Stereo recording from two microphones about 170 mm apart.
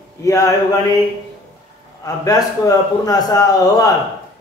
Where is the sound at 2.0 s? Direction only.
20° left (ahead or behind).